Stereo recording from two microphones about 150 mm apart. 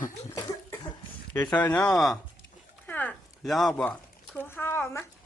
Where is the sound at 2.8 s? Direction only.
10° left (ahead or behind).